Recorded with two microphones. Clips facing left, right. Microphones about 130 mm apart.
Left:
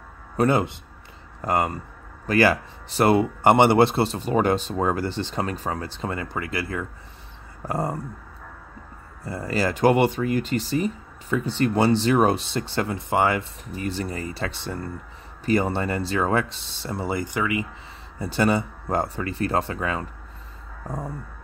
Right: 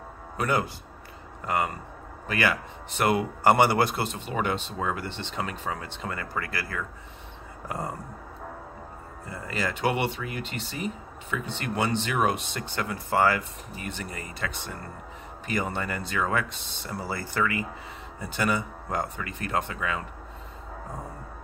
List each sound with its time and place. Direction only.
0.4 s speech: 25° left (ahead or behind)
6.1 s speech: 20° left (ahead or behind)
7.6 s speech: 35° left (ahead or behind)
9.2 s speech: 35° left (ahead or behind); by 17.6 s 15° left (ahead or behind)
18.2 s speech: 30° left (ahead or behind)